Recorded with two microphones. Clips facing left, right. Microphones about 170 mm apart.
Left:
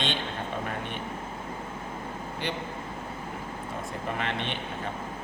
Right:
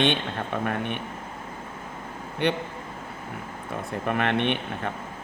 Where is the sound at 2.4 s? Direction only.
65° right (ahead or behind).